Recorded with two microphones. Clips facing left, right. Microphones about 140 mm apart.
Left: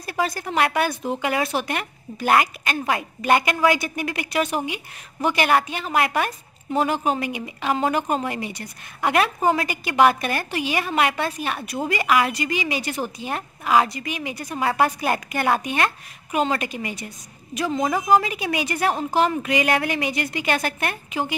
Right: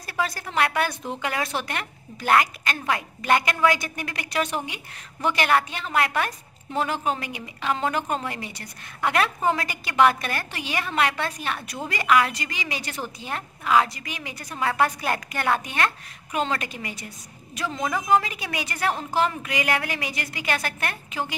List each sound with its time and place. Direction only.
0.0 s a woman's voice: 20° left (ahead or behind)
17.8 s a woman's voice: 35° left (ahead or behind)
18.1 s a woman's voice: 15° left (ahead or behind)